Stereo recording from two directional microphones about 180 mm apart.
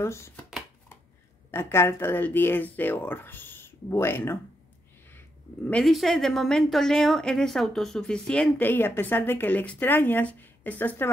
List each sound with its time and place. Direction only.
0.0 s speech: 15° left (ahead or behind)
1.5 s speech: 15° left (ahead or behind)
5.7 s a woman's voice: 5° left (ahead or behind)